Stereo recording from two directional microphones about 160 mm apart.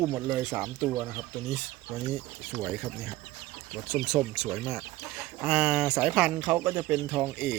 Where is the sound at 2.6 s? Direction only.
5° right (ahead or behind).